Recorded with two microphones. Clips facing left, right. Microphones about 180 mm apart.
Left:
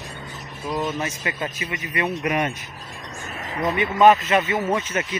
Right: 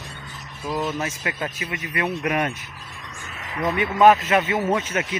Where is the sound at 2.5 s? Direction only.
40° left (ahead or behind).